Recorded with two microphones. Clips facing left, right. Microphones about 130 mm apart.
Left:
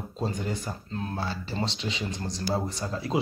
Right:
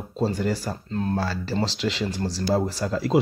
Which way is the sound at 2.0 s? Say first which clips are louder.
Right 6 dB; 35° right (ahead or behind).